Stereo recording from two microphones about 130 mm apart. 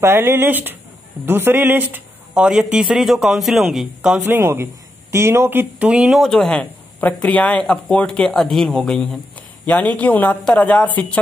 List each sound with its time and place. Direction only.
0.0 s speech: 20° right (ahead or behind)
4.2 s speech: 20° right (ahead or behind)
6.2 s speech: 5° left (ahead or behind)